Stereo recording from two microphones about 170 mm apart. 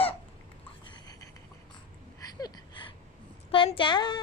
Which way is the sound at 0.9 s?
25° left (ahead or behind).